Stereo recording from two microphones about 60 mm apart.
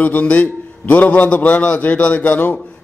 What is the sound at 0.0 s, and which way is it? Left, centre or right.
A man's voice, left.